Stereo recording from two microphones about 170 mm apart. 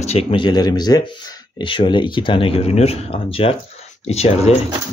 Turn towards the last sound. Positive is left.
turn(degrees=40)  # may be behind; listen again after turning